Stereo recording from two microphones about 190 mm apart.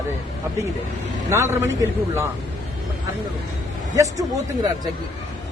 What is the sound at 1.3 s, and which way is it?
Speech, 15° right (ahead or behind).